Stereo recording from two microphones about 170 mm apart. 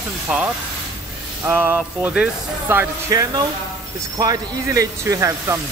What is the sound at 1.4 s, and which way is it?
Speech, 10° right (ahead or behind).